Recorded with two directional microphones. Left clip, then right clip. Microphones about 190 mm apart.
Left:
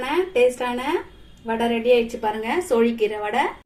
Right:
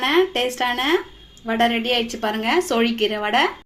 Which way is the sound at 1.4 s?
35° right (ahead or behind).